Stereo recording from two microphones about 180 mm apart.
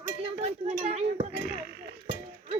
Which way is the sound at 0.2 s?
35° right (ahead or behind).